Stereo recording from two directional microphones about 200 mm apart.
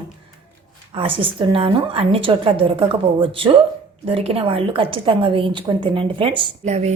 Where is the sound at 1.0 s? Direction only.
25° right (ahead or behind).